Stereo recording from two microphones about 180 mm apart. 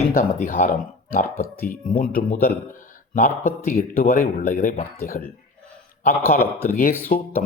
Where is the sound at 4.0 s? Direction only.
50° left (ahead or behind).